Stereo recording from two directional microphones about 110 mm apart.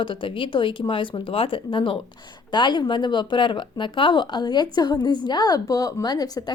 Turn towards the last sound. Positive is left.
turn(degrees=40)  # may be behind; listen again after turning